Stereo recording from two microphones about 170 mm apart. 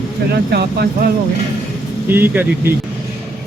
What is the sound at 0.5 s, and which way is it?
Speech, 70° right (ahead or behind).